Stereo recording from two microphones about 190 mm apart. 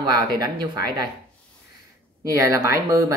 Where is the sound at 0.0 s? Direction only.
20° right (ahead or behind).